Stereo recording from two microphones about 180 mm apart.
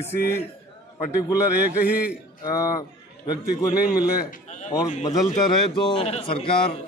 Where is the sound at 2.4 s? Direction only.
20° left (ahead or behind).